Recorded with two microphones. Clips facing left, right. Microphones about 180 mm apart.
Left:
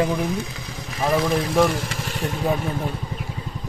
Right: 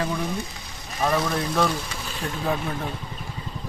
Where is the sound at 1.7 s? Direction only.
90° left.